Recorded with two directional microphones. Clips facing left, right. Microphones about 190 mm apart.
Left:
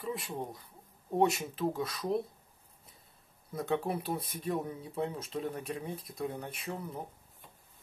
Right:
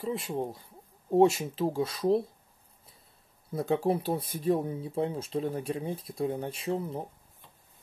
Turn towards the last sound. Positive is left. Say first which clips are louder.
# right 8 dB
turn(degrees=-30)  # may be behind; listen again after turning